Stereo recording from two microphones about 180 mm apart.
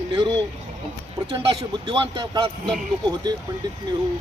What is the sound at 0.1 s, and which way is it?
Speech, 25° right (ahead or behind).